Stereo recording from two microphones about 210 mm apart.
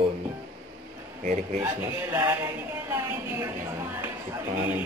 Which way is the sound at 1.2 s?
30° right (ahead or behind).